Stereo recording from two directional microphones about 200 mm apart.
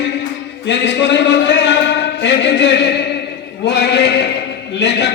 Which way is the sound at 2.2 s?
60° left (ahead or behind).